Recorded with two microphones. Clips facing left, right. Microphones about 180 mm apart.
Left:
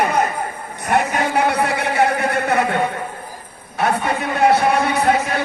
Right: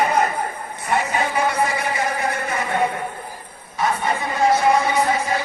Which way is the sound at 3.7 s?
65° left (ahead or behind).